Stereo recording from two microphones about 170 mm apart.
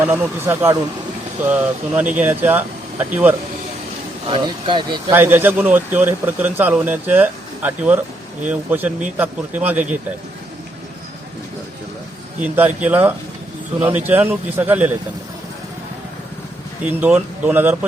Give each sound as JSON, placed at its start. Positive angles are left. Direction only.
{"t": 0.0, "sound": "speech", "side_deg": -15}
{"t": 4.3, "sound": "speech", "side_deg": -30}
{"t": 5.1, "sound": "speech", "side_deg": -10}
{"t": 12.4, "sound": "speech", "side_deg": -10}
{"t": 16.8, "sound": "speech", "side_deg": -10}